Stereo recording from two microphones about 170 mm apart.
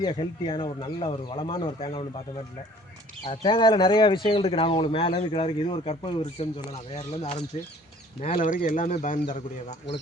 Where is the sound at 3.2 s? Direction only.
30° left (ahead or behind).